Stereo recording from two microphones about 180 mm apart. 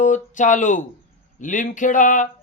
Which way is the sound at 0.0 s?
45° left (ahead or behind).